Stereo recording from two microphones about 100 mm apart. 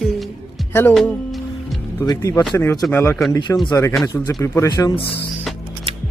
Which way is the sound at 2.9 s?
20° left (ahead or behind).